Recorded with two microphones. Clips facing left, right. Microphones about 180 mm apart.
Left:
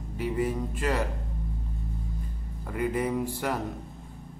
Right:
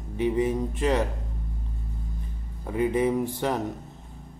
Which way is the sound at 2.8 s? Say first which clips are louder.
Right 4 dB; 20° right (ahead or behind).